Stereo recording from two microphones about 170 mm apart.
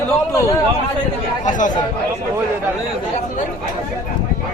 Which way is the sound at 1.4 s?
50° left (ahead or behind).